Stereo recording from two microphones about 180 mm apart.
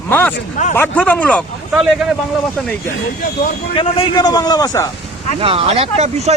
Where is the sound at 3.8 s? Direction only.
30° left (ahead or behind).